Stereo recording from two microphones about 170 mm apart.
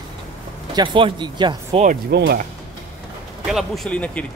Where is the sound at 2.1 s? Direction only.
80° right.